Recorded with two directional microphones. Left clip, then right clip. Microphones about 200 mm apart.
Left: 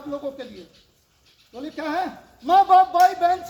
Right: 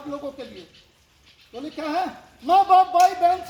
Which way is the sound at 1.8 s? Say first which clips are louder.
Even; centre (ahead or behind).